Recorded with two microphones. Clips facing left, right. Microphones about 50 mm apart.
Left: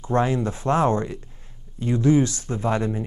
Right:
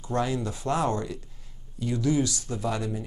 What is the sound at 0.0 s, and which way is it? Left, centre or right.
Speech, left.